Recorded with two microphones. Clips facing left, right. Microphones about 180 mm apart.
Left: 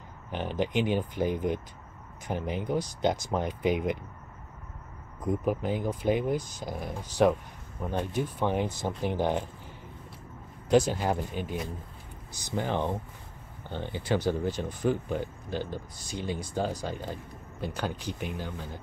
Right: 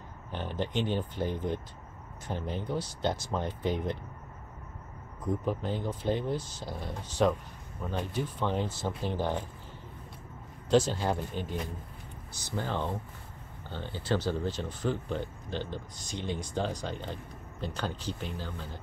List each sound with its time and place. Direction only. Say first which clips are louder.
0.3 s speech: left 4 dB; 15° left (ahead or behind)
5.2 s speech: left 3 dB; 10° left (ahead or behind)
10.7 s speech: left 2 dB; 10° left (ahead or behind)